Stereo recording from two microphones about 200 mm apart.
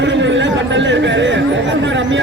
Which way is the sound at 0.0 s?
65° right (ahead or behind).